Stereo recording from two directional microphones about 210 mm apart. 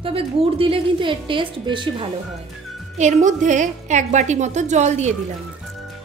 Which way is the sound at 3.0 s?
35° right (ahead or behind).